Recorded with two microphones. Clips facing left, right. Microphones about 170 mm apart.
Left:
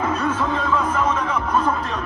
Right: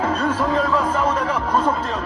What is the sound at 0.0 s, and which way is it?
Music, 30° right (ahead or behind).